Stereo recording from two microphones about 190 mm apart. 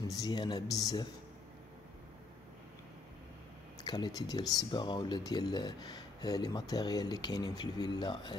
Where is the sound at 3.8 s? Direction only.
20° left (ahead or behind).